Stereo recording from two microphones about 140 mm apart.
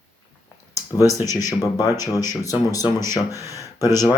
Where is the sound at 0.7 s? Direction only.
25° left (ahead or behind).